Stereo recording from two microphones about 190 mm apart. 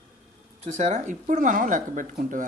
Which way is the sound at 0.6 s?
40° right (ahead or behind).